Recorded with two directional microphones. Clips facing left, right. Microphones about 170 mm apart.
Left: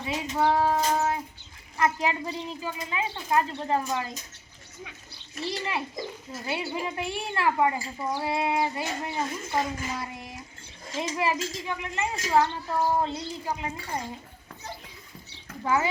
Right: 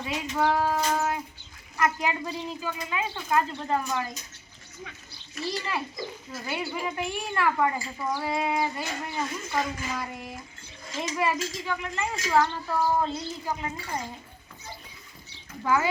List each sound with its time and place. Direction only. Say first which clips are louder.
0.0 s speech: left 1 dB; 25° left (ahead or behind)
5.4 s speech: even; 20° left (ahead or behind)
15.6 s speech: right 1 dB; 25° left (ahead or behind)